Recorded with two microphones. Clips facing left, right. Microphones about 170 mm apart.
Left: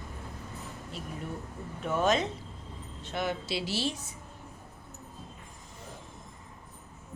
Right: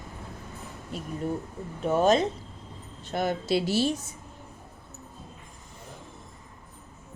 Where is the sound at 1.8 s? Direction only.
35° right (ahead or behind).